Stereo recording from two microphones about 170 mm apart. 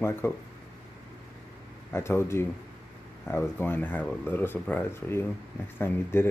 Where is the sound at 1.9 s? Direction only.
15° left (ahead or behind).